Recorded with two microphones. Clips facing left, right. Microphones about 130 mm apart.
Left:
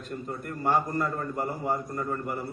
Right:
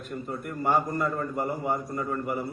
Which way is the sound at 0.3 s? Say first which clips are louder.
Right 1 dB; 5° right (ahead or behind).